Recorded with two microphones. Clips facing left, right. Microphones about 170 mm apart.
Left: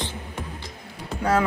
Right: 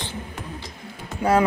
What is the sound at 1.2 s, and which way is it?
Speech, 10° right (ahead or behind).